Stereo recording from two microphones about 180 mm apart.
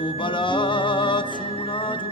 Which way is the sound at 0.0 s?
25° left (ahead or behind).